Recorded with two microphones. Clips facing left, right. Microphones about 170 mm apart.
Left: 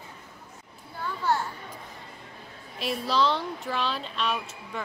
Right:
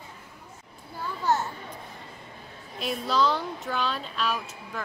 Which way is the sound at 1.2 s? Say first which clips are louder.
Right 1 dB; 20° right (ahead or behind).